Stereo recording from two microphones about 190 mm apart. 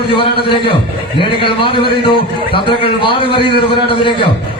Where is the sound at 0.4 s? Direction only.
25° left (ahead or behind).